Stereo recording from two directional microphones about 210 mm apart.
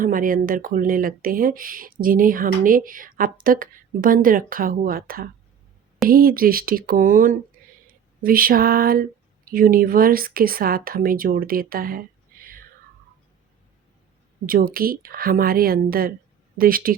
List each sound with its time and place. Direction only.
0.0 s speech: 40° right (ahead or behind)
7.6 s a sound: 45° right (ahead or behind)
8.2 s speech: 45° right (ahead or behind)
14.4 s speech: 45° right (ahead or behind)